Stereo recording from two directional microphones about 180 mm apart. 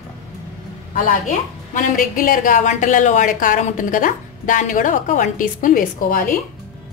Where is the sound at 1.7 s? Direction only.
45° left (ahead or behind).